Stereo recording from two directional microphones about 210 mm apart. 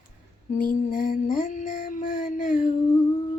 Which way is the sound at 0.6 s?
40° left (ahead or behind).